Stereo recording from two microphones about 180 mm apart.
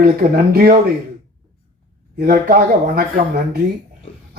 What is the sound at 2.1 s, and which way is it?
Speech, 60° right (ahead or behind).